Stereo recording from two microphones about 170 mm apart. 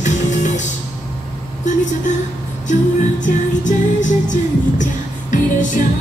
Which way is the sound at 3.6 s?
45° left (ahead or behind).